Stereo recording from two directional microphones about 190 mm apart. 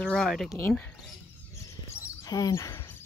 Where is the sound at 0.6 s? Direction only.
15° left (ahead or behind).